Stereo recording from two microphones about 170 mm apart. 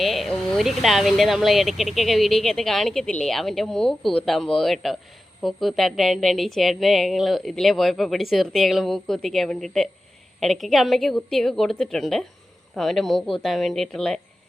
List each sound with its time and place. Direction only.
0.0 s speech: centre (ahead or behind)